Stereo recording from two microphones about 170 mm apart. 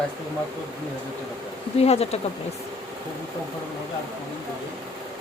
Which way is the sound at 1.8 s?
40° left (ahead or behind).